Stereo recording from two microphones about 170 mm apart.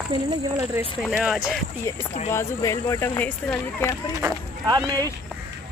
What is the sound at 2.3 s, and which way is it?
Speech, 20° left (ahead or behind).